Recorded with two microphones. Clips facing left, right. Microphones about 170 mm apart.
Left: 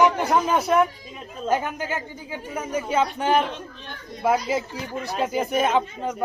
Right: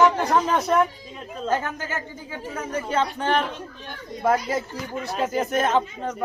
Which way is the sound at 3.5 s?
Centre (ahead or behind).